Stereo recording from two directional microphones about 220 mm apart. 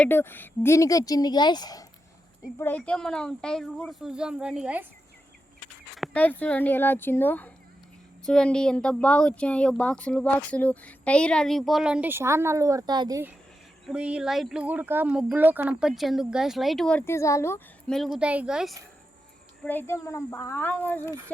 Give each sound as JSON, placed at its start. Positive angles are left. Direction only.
{"t": 0.0, "sound": "speech", "side_deg": 10}
{"t": 6.0, "sound": "speech", "side_deg": 5}
{"t": 19.6, "sound": "speech", "side_deg": 10}